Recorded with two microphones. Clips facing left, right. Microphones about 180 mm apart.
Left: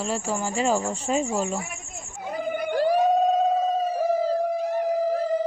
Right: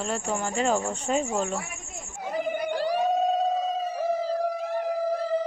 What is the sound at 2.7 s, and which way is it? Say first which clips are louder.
Siren: left 6 dB; 45° left (ahead or behind).